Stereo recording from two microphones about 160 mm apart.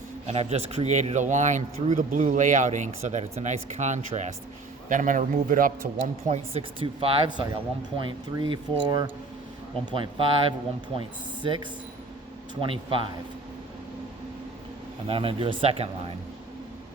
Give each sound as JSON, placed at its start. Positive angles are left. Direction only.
{"t": 0.3, "sound": "speech", "side_deg": -40}
{"t": 11.4, "sound": "speech", "side_deg": -30}
{"t": 15.0, "sound": "speech", "side_deg": -35}